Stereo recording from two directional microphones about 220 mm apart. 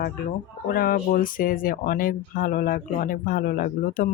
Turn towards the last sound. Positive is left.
turn(degrees=40)  # may be behind; listen again after turning